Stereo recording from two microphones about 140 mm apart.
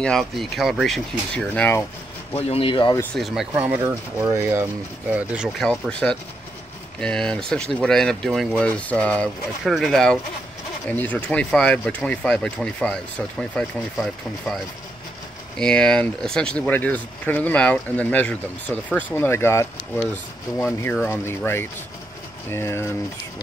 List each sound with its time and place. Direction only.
0.0 s speech: centre (ahead or behind)
2.3 s speech: 40° left (ahead or behind)
3.2 s speech: centre (ahead or behind)
3.5 s speech: 20° right (ahead or behind)
5.1 s speech: 10° right (ahead or behind)
5.6 s speech: 5° left (ahead or behind)
15.6 s speech: 5° left (ahead or behind)
22.5 s speech: 20° left (ahead or behind)